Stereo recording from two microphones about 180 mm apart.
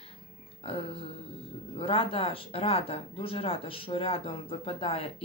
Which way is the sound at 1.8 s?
30° left (ahead or behind).